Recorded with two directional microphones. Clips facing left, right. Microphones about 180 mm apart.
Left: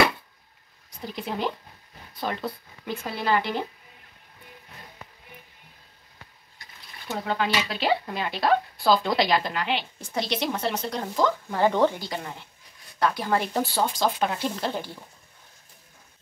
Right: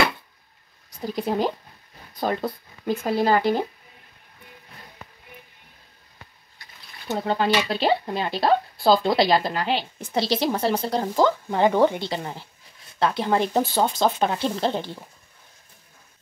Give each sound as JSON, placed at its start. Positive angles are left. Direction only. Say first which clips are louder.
{"t": 1.0, "sound": "speech", "louder": "right 6 dB", "side_deg": -40}
{"t": 7.1, "sound": "speech", "louder": "right 4 dB", "side_deg": -30}
{"t": 11.7, "sound": "a woman's voice", "louder": "right 4 dB", "side_deg": -15}
{"t": 12.0, "sound": "speech", "louder": "right 4 dB", "side_deg": -30}